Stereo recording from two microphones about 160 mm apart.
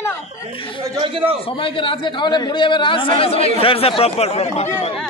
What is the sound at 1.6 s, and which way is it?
Speech, 35° left (ahead or behind).